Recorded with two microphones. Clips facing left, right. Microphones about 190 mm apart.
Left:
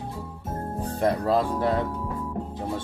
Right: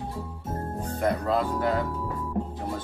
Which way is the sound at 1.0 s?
30° left (ahead or behind).